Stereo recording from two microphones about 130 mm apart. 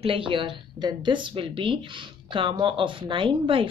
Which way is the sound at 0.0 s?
45° right (ahead or behind).